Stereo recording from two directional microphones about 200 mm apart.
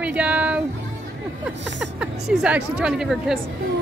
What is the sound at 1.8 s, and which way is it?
Speech, 5° right (ahead or behind).